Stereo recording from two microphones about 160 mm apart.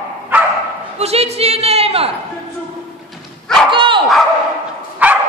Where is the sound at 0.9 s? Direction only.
40° right (ahead or behind).